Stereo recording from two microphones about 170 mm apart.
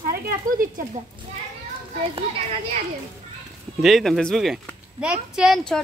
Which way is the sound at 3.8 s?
Centre (ahead or behind).